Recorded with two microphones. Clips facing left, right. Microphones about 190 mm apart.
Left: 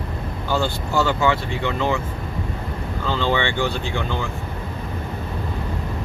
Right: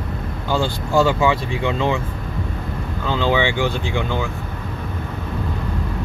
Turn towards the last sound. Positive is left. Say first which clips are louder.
# right 2 dB
turn(degrees=-10)  # may be behind; listen again after turning